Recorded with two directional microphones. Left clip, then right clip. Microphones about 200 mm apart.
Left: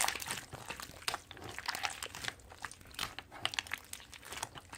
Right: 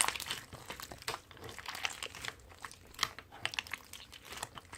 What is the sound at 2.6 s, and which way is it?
Crumpling, 10° left (ahead or behind).